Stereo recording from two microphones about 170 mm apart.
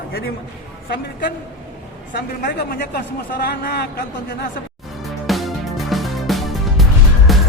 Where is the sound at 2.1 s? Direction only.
70° left (ahead or behind).